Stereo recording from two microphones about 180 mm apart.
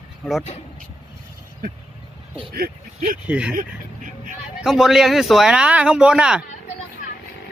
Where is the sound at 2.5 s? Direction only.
55° right (ahead or behind).